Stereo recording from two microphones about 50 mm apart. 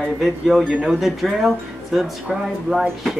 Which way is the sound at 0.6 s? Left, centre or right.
Right.